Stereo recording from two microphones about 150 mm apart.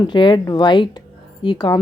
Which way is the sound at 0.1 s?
30° left (ahead or behind).